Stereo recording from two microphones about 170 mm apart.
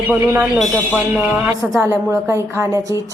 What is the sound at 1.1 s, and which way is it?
A woman's voice, 10° right (ahead or behind).